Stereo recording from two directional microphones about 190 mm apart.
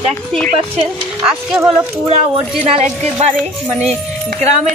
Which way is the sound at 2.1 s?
35° right (ahead or behind).